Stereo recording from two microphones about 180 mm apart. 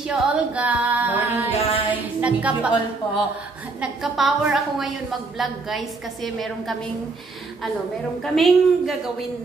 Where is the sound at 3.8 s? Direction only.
Centre (ahead or behind).